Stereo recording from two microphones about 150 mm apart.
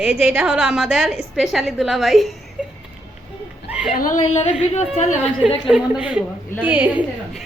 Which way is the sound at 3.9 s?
65° left (ahead or behind).